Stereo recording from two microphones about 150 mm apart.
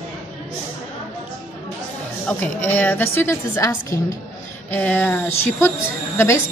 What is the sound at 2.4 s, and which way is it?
A woman's voice, 10° left (ahead or behind).